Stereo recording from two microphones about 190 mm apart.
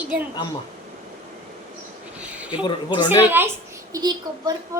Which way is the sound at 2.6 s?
25° left (ahead or behind).